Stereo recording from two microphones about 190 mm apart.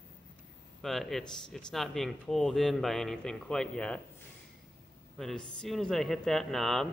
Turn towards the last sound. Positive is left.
turn(degrees=0)  # may be behind; listen again after turning